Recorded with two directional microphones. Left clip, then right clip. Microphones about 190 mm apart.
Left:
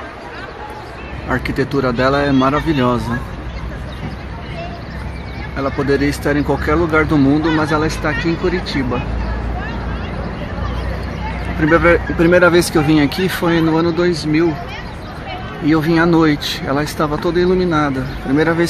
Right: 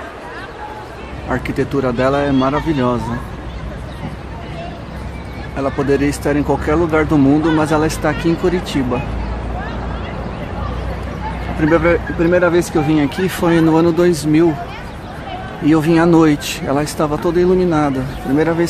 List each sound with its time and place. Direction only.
1.3 s speech: 5° right (ahead or behind)
5.9 s speech: 10° right (ahead or behind)
11.8 s speech: centre (ahead or behind); by 14.5 s 20° right (ahead or behind)
15.6 s speech: 15° right (ahead or behind)